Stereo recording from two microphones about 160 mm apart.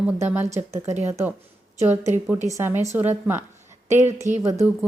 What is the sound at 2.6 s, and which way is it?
Speech, 15° right (ahead or behind).